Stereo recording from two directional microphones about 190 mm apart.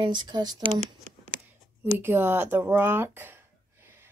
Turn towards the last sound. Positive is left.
turn(degrees=-10)  # may be behind; listen again after turning